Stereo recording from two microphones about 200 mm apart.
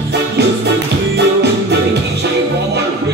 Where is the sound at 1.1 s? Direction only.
55° right (ahead or behind).